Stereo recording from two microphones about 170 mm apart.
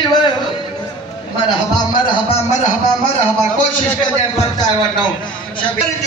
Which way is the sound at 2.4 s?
45° left (ahead or behind).